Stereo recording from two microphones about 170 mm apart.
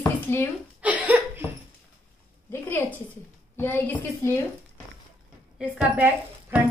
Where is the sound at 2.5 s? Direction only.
10° left (ahead or behind).